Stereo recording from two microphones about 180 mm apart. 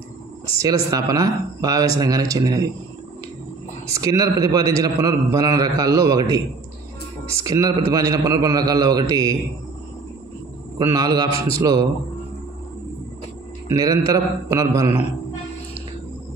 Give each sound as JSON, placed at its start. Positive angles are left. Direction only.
{"t": 0.8, "sound": "a man's voice", "side_deg": -20}
{"t": 3.8, "sound": "a man's voice", "side_deg": -20}
{"t": 10.8, "sound": "a man's voice", "side_deg": -20}
{"t": 13.7, "sound": "a man's voice", "side_deg": -20}